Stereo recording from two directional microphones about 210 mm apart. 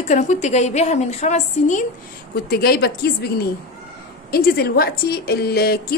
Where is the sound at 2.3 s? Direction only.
45° left (ahead or behind).